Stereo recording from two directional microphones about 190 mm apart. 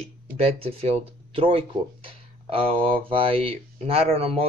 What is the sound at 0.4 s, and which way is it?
Speech, 30° right (ahead or behind).